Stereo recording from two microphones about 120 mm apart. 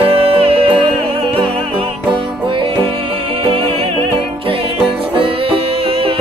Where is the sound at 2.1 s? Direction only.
45° right (ahead or behind).